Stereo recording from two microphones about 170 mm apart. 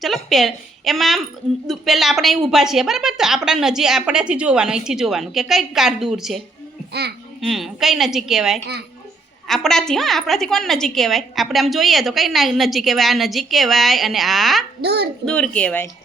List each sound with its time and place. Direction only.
0.0 s a woman's voice: centre (ahead or behind)
7.4 s a woman's voice: centre (ahead or behind)
14.8 s a child's voice: 70° right (ahead or behind)
15.2 s speech: 5° left (ahead or behind)